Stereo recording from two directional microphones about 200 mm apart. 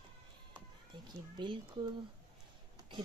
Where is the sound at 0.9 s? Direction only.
25° right (ahead or behind).